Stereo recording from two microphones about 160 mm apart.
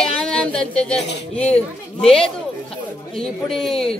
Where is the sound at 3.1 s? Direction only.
Centre (ahead or behind).